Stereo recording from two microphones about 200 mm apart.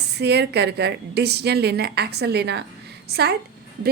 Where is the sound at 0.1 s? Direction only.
55° right (ahead or behind).